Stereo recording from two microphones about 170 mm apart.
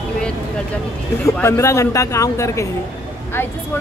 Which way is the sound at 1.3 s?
15° left (ahead or behind).